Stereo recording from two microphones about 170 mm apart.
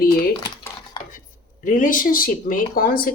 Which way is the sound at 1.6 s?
50° left (ahead or behind).